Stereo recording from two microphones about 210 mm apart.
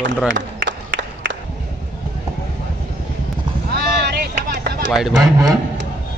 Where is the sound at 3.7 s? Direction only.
50° right (ahead or behind).